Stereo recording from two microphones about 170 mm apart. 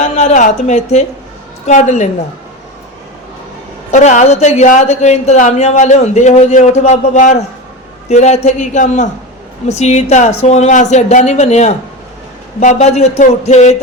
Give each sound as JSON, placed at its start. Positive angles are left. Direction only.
{"t": 0.0, "sound": "a woman's voice", "side_deg": 40}
{"t": 3.9, "sound": "a woman's voice", "side_deg": 45}